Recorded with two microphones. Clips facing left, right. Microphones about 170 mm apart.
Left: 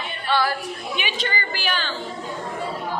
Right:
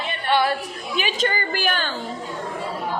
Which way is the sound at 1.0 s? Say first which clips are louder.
Right 6 dB; 40° right (ahead or behind).